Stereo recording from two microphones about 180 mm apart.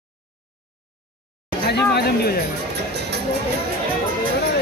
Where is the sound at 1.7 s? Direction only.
65° left (ahead or behind).